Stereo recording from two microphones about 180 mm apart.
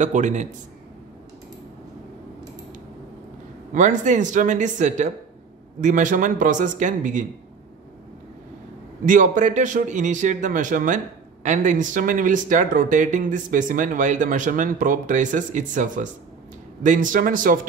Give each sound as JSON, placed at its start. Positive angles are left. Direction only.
{"t": 0.0, "sound": "speech", "side_deg": -40}
{"t": 3.7, "sound": "speech", "side_deg": -45}
{"t": 9.0, "sound": "speech", "side_deg": -45}